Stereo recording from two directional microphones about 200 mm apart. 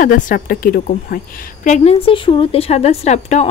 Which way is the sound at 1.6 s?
35° left (ahead or behind).